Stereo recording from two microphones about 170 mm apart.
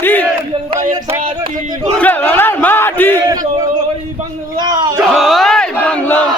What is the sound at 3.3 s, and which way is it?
Speech, 20° right (ahead or behind).